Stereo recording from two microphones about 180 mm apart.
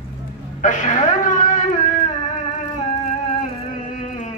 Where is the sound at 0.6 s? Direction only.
45° left (ahead or behind).